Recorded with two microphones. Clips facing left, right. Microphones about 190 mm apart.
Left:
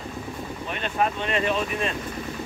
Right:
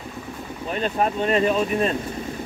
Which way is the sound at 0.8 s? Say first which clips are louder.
Right 4 dB; 35° right (ahead or behind).